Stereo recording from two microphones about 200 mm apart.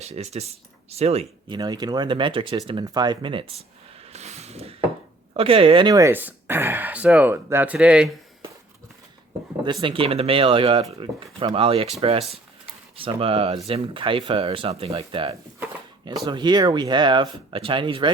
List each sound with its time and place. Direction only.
0.0 s speech: 30° right (ahead or behind)
4.1 s vehicle: 35° right (ahead or behind)
5.4 s speech: 30° right (ahead or behind); by 8.1 s 5° right (ahead or behind)
9.8 s speech: 25° right (ahead or behind)